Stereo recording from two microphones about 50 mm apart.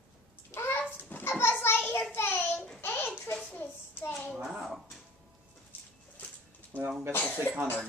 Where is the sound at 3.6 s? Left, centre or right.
Left.